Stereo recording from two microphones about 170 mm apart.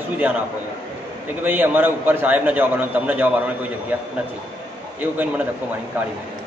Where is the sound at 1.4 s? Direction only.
10° right (ahead or behind).